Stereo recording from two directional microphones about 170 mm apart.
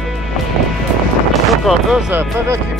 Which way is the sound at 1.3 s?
Centre (ahead or behind).